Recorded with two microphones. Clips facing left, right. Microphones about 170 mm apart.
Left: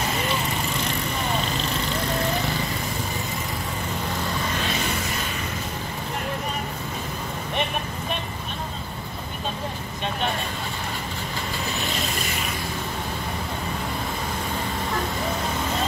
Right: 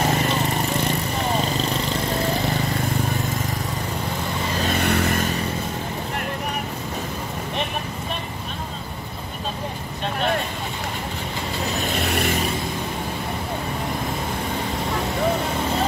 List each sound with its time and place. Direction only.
4.6 s vehicle: 60° right (ahead or behind)